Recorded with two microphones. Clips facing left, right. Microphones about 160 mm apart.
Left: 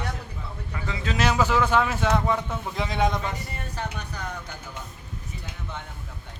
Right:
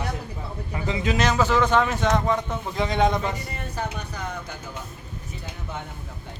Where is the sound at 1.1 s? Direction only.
10° left (ahead or behind).